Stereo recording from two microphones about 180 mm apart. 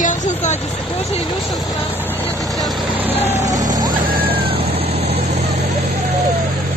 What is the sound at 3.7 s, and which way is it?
Vehicle, 20° right (ahead or behind).